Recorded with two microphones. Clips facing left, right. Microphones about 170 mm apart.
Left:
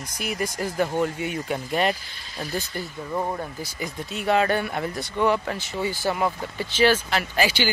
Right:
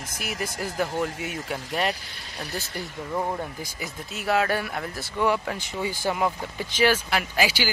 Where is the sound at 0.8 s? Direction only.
5° right (ahead or behind).